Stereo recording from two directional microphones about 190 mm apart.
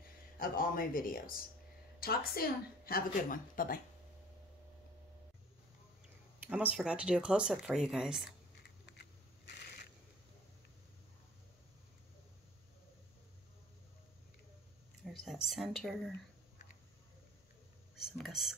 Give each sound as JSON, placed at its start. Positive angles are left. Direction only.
{"t": 0.4, "sound": "a woman's voice", "side_deg": 50}
{"t": 6.4, "sound": "speech", "side_deg": -5}
{"t": 15.0, "sound": "a sound", "side_deg": 0}
{"t": 15.4, "sound": "speech", "side_deg": 0}
{"t": 17.9, "sound": "speech", "side_deg": 0}